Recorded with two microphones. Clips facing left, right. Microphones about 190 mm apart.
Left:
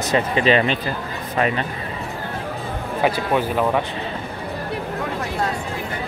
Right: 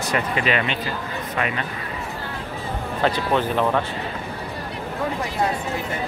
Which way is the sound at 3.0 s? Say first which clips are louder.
Left 1 dB; 10° left (ahead or behind).